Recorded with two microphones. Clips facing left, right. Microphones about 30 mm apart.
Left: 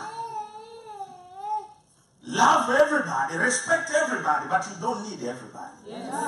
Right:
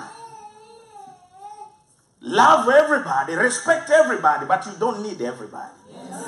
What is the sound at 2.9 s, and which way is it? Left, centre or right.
Speech, right.